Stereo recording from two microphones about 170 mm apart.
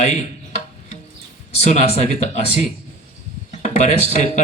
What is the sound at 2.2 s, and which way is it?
Speech, 40° left (ahead or behind).